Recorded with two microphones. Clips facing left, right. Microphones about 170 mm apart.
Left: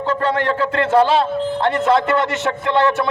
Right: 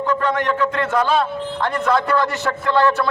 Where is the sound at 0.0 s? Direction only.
30° left (ahead or behind).